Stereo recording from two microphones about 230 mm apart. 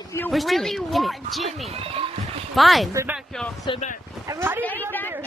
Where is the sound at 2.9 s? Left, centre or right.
Centre.